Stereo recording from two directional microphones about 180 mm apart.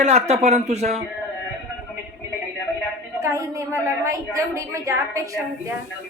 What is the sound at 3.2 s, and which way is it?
A woman's voice, 15° right (ahead or behind).